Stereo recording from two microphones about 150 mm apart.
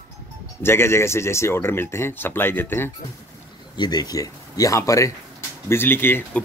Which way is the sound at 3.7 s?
25° left (ahead or behind).